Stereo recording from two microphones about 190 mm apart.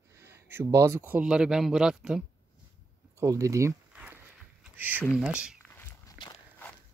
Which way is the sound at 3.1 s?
15° right (ahead or behind).